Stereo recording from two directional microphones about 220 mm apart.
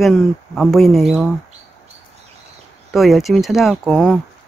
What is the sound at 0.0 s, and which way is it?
Speech, centre (ahead or behind).